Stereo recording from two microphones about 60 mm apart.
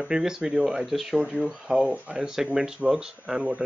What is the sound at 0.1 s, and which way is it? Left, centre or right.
Speech, centre.